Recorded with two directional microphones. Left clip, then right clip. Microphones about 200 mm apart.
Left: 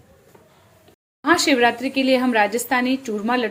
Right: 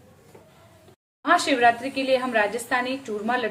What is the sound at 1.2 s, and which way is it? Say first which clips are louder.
A woman's voice: left 2 dB; 40° left (ahead or behind).